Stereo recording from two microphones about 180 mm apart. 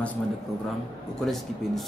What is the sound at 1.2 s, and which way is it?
Speech, centre (ahead or behind).